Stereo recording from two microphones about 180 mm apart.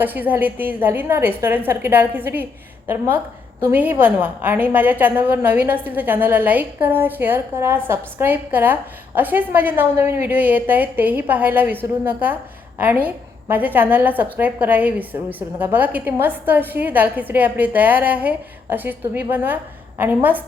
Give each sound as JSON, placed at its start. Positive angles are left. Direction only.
{"t": 0.0, "sound": "a woman's voice", "side_deg": -10}